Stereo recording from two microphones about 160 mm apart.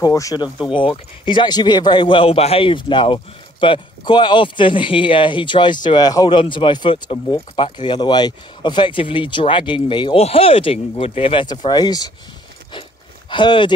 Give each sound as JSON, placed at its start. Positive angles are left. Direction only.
{"t": 0.0, "sound": "a man's voice", "side_deg": 20}
{"t": 13.3, "sound": "speech", "side_deg": 30}